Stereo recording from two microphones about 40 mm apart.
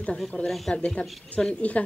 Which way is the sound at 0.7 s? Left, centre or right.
Left.